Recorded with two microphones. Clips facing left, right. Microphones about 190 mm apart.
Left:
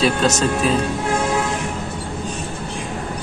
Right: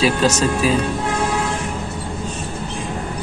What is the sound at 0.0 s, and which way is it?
Speech, 5° right (ahead or behind).